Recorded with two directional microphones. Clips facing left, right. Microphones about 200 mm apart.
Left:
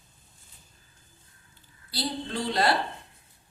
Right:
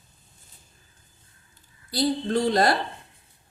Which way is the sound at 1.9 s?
45° right (ahead or behind).